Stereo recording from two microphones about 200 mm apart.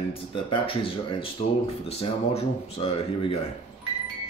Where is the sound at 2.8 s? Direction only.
25° left (ahead or behind).